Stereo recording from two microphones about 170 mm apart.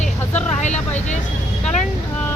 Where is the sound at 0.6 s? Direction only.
45° left (ahead or behind).